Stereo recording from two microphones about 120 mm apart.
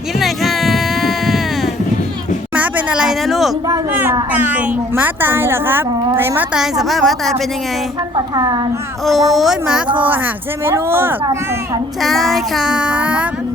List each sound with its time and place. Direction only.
0.2 s a sound: centre (ahead or behind)
2.6 s a sound: 10° right (ahead or behind)
4.3 s a woman's voice: 15° right (ahead or behind)
6.5 s child singing: 5° right (ahead or behind)
8.1 s a woman's voice: 35° right (ahead or behind)
9.0 s child singing: centre (ahead or behind)
10.7 s speech: 20° right (ahead or behind)
12.0 s child singing: centre (ahead or behind)